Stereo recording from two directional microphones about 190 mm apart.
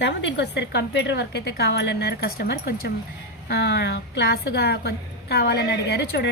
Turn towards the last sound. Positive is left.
turn(degrees=60)  # may be behind; listen again after turning